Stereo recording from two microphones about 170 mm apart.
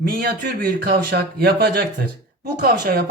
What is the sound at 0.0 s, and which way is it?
Speech, 60° right (ahead or behind).